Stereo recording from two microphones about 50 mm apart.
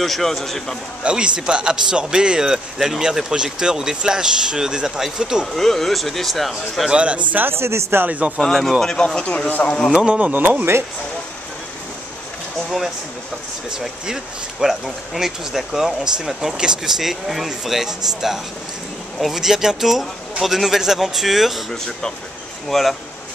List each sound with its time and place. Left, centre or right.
0.0 s a man's voice: centre
1.0 s speech: right
5.5 s a man's voice: centre
6.9 s speech: right
7.3 s speech: right
8.0 s speech: right
8.5 s a man's voice: centre
8.8 s speech: centre
9.5 s speech: left
9.9 s speech: right
12.6 s a man's voice: centre
21.6 s speech: centre
22.7 s a man's voice: centre